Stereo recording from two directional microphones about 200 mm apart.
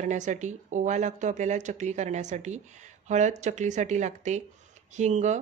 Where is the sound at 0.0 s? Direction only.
40° right (ahead or behind).